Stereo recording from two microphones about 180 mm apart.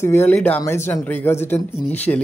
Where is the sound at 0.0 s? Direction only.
15° left (ahead or behind).